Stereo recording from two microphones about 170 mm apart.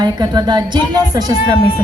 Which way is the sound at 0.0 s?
25° right (ahead or behind).